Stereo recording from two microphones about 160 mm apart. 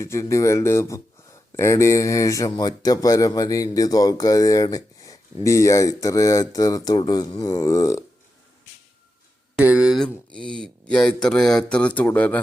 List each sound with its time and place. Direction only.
0.0 s speech: 20° left (ahead or behind)
9.8 s speech: centre (ahead or behind)